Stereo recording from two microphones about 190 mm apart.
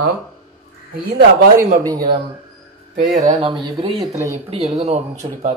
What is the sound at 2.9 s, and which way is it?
Speech, 40° right (ahead or behind).